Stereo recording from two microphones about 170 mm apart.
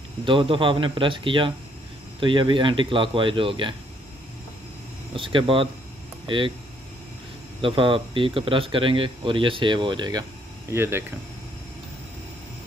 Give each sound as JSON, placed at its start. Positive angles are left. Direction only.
{"t": 0.2, "sound": "speech", "side_deg": -30}
{"t": 5.1, "sound": "speech", "side_deg": -30}
{"t": 7.6, "sound": "speech", "side_deg": -30}
{"t": 10.7, "sound": "speech", "side_deg": -15}